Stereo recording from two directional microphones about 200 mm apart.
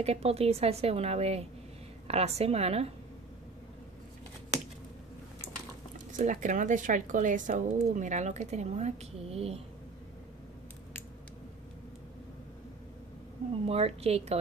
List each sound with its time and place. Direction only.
0.0 s speech: 30° right (ahead or behind)
5.9 s speech: 40° right (ahead or behind)
13.7 s speech: 30° right (ahead or behind)